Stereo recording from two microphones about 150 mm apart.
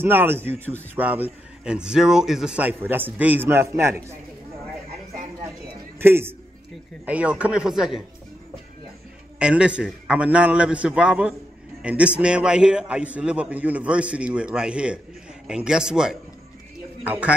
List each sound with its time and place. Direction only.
0.0 s a man's voice: 15° right (ahead or behind)
5.9 s a man's voice: 15° right (ahead or behind)
9.4 s a man's voice: 5° right (ahead or behind)